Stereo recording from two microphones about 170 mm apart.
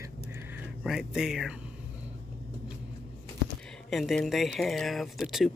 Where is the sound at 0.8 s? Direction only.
Centre (ahead or behind).